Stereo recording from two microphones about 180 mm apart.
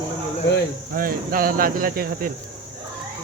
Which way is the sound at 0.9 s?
55° right (ahead or behind).